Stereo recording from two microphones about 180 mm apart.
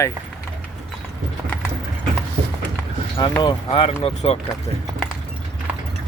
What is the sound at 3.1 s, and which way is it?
Speech, 25° left (ahead or behind).